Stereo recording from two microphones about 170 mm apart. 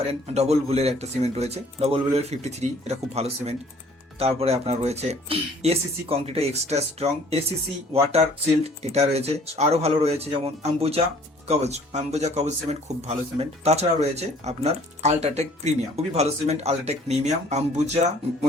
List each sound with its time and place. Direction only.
0.1 s speech: 40° right (ahead or behind)